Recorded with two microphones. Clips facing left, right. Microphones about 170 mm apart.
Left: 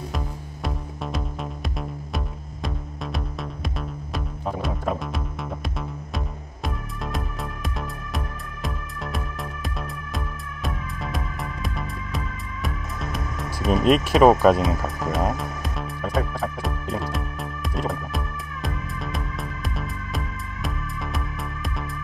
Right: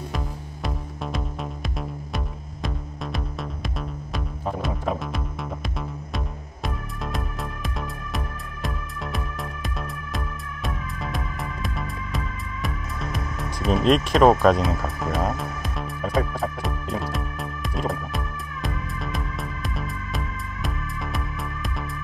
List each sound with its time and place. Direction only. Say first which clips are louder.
0.1 s music: even; centre (ahead or behind)
8.6 s music: even; centre (ahead or behind)